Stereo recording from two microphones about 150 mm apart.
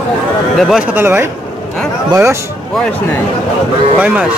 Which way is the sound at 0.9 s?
15° right (ahead or behind).